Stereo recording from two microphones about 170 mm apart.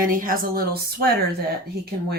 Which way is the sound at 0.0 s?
55° right (ahead or behind).